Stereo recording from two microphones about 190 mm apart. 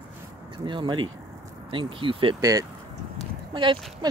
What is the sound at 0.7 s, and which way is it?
Speech, 25° right (ahead or behind).